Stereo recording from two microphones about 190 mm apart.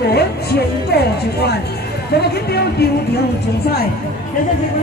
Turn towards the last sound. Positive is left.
turn(degrees=60)  # may be behind; listen again after turning